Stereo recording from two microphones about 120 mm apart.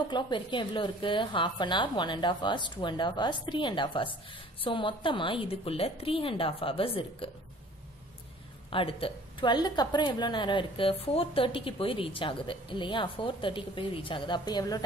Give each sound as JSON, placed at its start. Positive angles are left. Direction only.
{"t": 0.1, "sound": "a woman's voice", "side_deg": 40}
{"t": 8.6, "sound": "a woman's voice", "side_deg": 50}